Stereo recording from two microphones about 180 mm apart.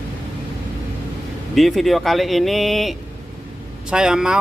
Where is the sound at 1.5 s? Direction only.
Centre (ahead or behind).